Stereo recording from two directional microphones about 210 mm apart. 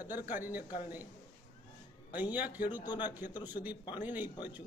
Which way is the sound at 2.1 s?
5° right (ahead or behind).